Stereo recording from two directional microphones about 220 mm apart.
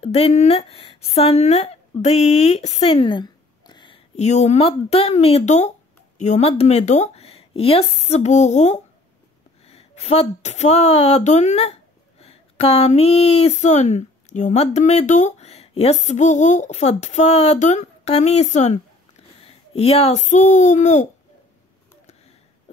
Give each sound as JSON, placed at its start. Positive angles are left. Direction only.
{"t": 0.0, "sound": "a woman's voice", "side_deg": 30}